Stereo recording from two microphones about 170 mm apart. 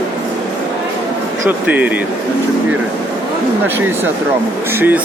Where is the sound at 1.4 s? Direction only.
10° right (ahead or behind).